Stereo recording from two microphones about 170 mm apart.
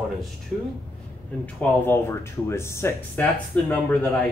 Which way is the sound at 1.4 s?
10° left (ahead or behind).